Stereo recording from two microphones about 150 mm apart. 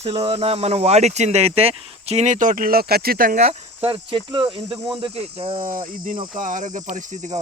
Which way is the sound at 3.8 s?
35° right (ahead or behind).